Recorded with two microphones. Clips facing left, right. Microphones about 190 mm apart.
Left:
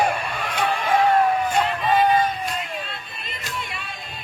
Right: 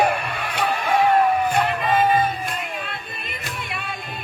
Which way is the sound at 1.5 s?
60° right (ahead or behind).